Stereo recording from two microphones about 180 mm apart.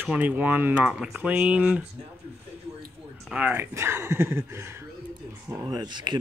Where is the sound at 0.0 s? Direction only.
10° right (ahead or behind).